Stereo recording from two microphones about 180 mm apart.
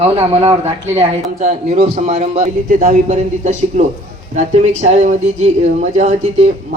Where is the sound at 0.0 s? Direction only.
35° right (ahead or behind).